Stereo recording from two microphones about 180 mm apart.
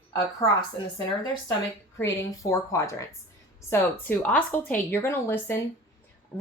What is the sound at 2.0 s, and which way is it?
Speech, 15° left (ahead or behind).